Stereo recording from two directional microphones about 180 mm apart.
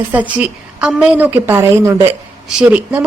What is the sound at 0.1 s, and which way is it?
Speech, 10° right (ahead or behind).